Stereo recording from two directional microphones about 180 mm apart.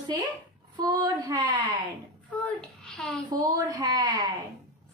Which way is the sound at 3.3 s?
20° right (ahead or behind).